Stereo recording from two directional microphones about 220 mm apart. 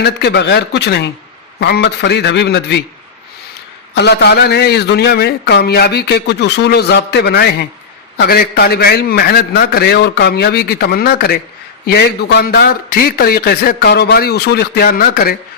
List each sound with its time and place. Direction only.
0.0 s a man's voice: 50° left (ahead or behind)
3.9 s a man's voice: 50° left (ahead or behind)